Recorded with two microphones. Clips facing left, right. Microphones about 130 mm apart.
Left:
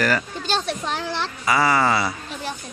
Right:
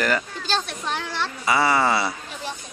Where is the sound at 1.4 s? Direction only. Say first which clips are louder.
Left 1 dB; 25° right (ahead or behind).